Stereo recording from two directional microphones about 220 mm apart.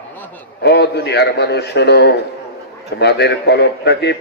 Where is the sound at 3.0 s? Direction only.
50° left (ahead or behind).